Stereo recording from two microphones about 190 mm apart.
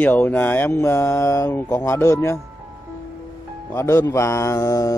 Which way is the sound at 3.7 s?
15° left (ahead or behind).